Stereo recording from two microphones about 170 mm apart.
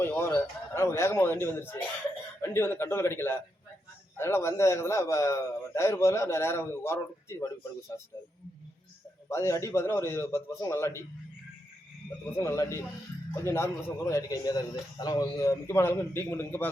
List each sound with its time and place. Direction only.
0.0 s a man's voice: 15° left (ahead or behind)
9.3 s a man's voice: 15° left (ahead or behind)
12.4 s a man's voice: 15° left (ahead or behind)